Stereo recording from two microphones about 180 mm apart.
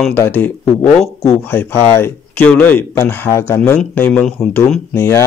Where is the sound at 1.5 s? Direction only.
10° left (ahead or behind).